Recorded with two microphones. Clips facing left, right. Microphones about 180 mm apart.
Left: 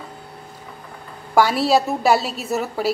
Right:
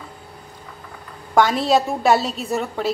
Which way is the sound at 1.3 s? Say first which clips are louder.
Even; 5° left (ahead or behind).